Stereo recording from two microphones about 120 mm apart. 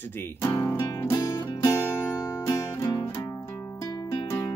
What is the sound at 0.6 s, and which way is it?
Music, 35° left (ahead or behind).